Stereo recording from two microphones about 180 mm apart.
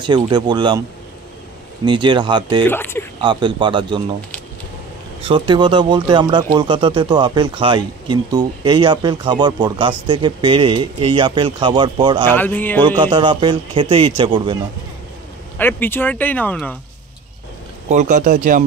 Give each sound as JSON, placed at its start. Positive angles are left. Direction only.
{"t": 0.0, "sound": "speech", "side_deg": -25}
{"t": 1.9, "sound": "speech", "side_deg": -25}
{"t": 2.6, "sound": "speech", "side_deg": 10}
{"t": 3.2, "sound": "speech", "side_deg": -25}
{"t": 5.2, "sound": "speech", "side_deg": -30}
{"t": 12.3, "sound": "speech", "side_deg": 10}
{"t": 13.0, "sound": "speech", "side_deg": -25}
{"t": 15.5, "sound": "speech", "side_deg": 10}
{"t": 17.8, "sound": "speech", "side_deg": -45}